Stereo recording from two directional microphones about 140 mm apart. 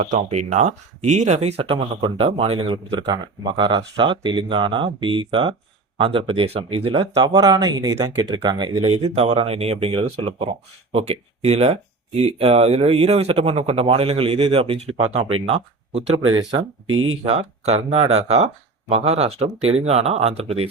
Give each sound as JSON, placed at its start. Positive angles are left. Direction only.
{"t": 0.0, "sound": "speech", "side_deg": -50}
{"t": 7.2, "sound": "speech", "side_deg": -30}
{"t": 8.9, "sound": "speech", "side_deg": -45}
{"t": 16.1, "sound": "speech", "side_deg": -35}
{"t": 17.2, "sound": "speech", "side_deg": -45}